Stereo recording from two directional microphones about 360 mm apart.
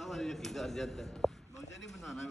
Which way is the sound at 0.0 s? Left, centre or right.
Centre.